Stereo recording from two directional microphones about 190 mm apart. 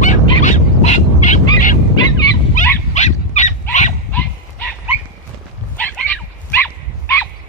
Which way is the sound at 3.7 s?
40° left (ahead or behind).